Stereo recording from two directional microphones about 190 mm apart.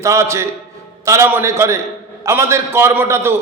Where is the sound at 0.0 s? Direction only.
15° right (ahead or behind).